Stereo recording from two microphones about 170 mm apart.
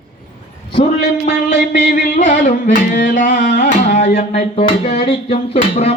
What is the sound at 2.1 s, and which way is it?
Speech, 45° left (ahead or behind).